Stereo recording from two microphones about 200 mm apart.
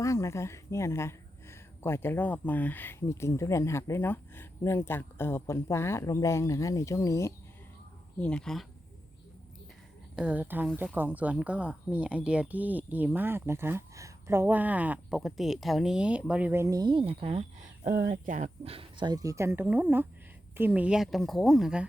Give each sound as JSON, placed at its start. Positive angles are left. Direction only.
{"t": 0.0, "sound": "a woman's voice", "side_deg": 15}
{"t": 8.2, "sound": "speech", "side_deg": 5}
{"t": 10.2, "sound": "speech", "side_deg": -5}
{"t": 17.8, "sound": "speech", "side_deg": -40}